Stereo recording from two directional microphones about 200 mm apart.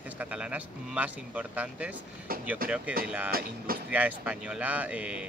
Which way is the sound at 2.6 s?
45° right (ahead or behind).